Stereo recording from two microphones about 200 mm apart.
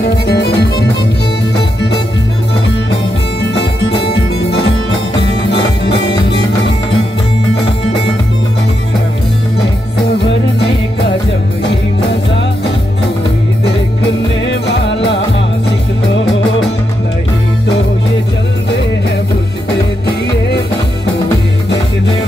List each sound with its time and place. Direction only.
0.0 s music: 55° left (ahead or behind)
4.1 s music: 60° left (ahead or behind)
14.4 s music: 65° left (ahead or behind)